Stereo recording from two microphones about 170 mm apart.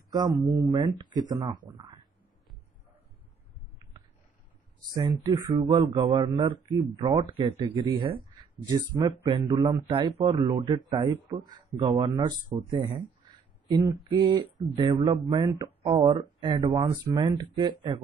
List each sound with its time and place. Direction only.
0.1 s speech: 25° right (ahead or behind)
4.9 s speech: 20° right (ahead or behind)
13.7 s a sound: 25° right (ahead or behind)
14.0 s speech: 25° right (ahead or behind)
15.8 s speech: 35° right (ahead or behind)